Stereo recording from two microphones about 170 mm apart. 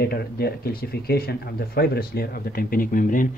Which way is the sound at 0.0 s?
70° left (ahead or behind).